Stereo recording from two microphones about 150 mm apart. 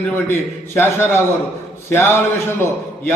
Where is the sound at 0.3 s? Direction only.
15° left (ahead or behind).